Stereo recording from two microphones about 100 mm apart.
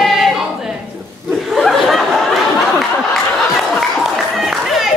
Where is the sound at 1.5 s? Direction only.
Centre (ahead or behind).